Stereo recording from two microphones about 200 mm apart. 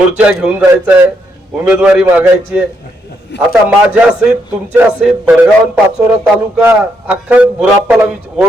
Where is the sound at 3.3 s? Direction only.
60° left (ahead or behind).